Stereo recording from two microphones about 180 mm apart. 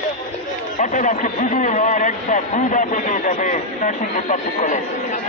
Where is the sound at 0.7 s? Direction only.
45° left (ahead or behind).